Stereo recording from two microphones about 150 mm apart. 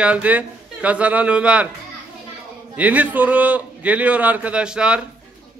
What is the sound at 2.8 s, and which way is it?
A man's voice, 10° right (ahead or behind).